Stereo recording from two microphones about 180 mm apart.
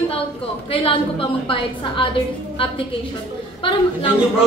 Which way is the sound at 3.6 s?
30° left (ahead or behind).